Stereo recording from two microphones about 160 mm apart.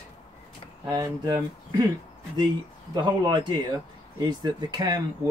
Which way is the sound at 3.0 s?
30° right (ahead or behind).